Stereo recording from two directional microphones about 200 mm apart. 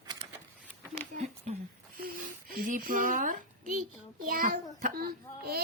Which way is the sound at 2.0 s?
45° right (ahead or behind).